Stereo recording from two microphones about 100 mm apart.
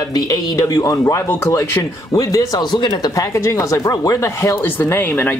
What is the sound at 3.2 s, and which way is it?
Speech, 30° left (ahead or behind).